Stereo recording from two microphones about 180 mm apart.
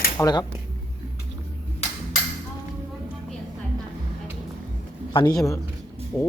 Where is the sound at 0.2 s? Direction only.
20° left (ahead or behind).